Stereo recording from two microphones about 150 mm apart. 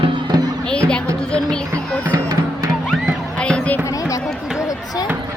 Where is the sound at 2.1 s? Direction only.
25° right (ahead or behind).